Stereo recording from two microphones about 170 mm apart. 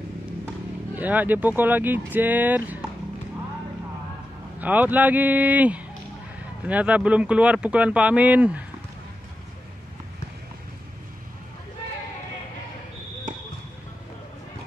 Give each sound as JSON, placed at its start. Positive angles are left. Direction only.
{"t": 0.9, "sound": "speech", "side_deg": -10}
{"t": 4.6, "sound": "speech", "side_deg": -10}